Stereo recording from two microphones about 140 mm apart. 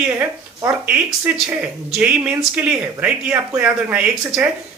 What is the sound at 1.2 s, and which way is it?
A woman's voice, 10° right (ahead or behind).